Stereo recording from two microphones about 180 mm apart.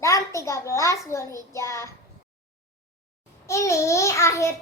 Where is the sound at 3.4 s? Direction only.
15° left (ahead or behind).